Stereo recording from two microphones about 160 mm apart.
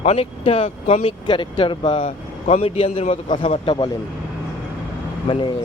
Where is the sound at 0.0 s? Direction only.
40° left (ahead or behind).